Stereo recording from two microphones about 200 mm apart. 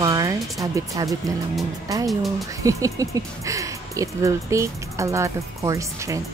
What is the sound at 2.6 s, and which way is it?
Speech, 15° right (ahead or behind).